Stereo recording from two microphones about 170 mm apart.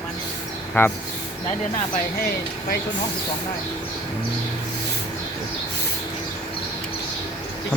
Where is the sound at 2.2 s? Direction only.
60° left (ahead or behind).